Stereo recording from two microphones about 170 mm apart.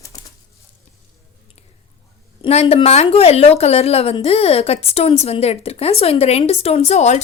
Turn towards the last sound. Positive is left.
turn(degrees=40)  # may be behind; listen again after turning